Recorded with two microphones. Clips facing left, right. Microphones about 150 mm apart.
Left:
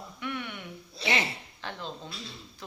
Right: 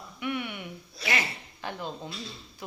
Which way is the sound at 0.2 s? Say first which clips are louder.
Right 4 dB; 10° right (ahead or behind).